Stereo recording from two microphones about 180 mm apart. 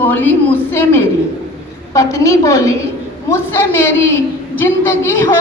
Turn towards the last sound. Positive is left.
turn(degrees=15)  # may be behind; listen again after turning